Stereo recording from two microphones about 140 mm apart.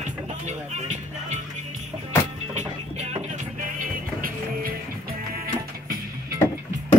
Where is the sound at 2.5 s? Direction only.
55° right (ahead or behind).